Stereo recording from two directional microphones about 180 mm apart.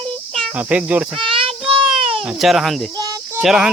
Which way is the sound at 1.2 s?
30° right (ahead or behind).